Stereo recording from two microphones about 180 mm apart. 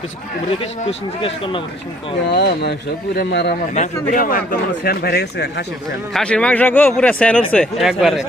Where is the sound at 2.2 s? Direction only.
70° left (ahead or behind).